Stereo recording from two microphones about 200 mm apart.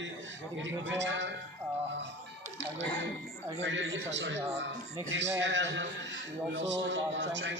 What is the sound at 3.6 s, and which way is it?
Speech, 70° right (ahead or behind).